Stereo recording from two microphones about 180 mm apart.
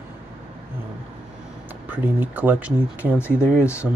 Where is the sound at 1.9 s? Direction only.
10° right (ahead or behind).